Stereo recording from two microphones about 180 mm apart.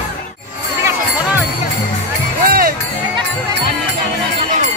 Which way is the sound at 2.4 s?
55° right (ahead or behind).